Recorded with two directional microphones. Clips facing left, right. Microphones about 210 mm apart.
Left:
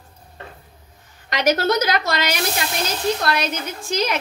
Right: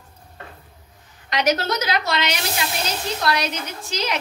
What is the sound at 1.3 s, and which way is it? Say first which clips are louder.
Speech: left 3 dB; 50° left (ahead or behind).